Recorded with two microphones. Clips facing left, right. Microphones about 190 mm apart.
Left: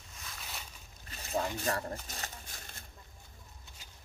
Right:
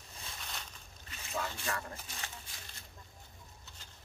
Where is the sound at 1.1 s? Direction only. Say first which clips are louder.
Left 5 dB; 40° left (ahead or behind).